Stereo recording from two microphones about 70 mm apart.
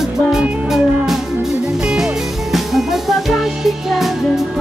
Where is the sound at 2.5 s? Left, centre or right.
Centre.